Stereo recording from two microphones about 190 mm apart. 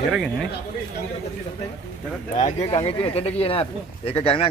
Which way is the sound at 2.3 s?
35° left (ahead or behind).